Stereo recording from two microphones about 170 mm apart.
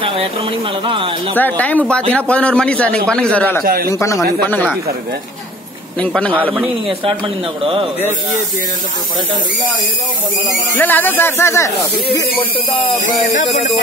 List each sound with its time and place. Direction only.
0.0 s speech: 30° right (ahead or behind)
1.3 s a man's voice: 10° left (ahead or behind)
5.9 s a man's voice: 5° left (ahead or behind)
7.6 s speech: 30° right (ahead or behind)
10.8 s a man's voice: 10° left (ahead or behind)